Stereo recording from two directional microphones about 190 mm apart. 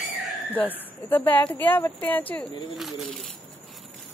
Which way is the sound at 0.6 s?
10° left (ahead or behind).